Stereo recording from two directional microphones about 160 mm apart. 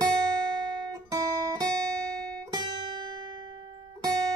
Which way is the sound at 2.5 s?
25° right (ahead or behind).